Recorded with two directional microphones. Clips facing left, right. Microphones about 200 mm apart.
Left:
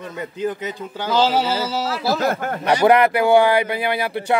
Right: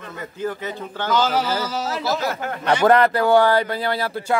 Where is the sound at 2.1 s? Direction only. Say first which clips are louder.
Left 3 dB; 50° left (ahead or behind).